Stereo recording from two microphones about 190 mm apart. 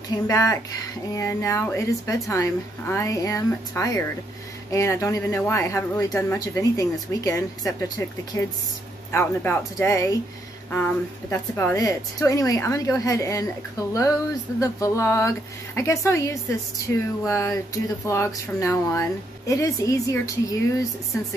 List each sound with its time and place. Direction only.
0.1 s a woman's voice: 15° left (ahead or behind)